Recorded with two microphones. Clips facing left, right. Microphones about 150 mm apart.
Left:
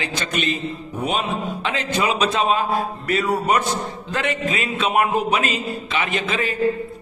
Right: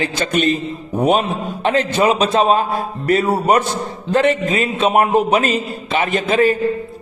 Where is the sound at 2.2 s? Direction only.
30° right (ahead or behind).